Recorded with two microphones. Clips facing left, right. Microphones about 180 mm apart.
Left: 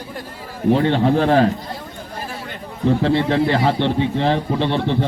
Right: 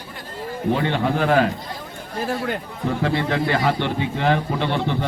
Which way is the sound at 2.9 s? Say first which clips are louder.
Left 5 dB; 25° left (ahead or behind).